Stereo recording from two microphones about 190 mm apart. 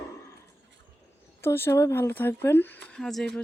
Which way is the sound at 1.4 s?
10° left (ahead or behind).